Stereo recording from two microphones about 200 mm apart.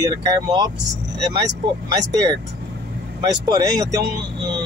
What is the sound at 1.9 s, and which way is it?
Speech, 20° right (ahead or behind).